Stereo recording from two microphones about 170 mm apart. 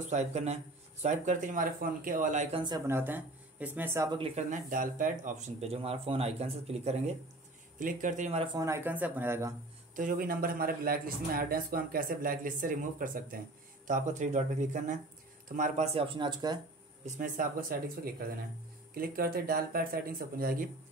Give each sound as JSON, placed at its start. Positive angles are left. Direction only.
{"t": 0.1, "sound": "speech", "side_deg": -40}
{"t": 2.9, "sound": "speech", "side_deg": -10}
{"t": 4.1, "sound": "speech", "side_deg": -35}
{"t": 7.8, "sound": "speech", "side_deg": -50}
{"t": 8.5, "sound": "speech", "side_deg": -15}
{"t": 9.9, "sound": "a man's voice", "side_deg": -55}
{"t": 15.9, "sound": "speech", "side_deg": -30}
{"t": 17.0, "sound": "speech", "side_deg": -50}
{"t": 18.9, "sound": "a man's voice", "side_deg": -60}